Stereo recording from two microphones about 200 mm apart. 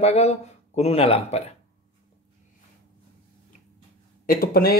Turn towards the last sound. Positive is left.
turn(degrees=50)  # may be behind; listen again after turning